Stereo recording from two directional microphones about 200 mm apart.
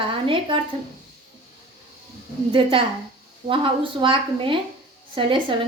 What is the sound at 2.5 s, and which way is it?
A woman's voice, 25° right (ahead or behind).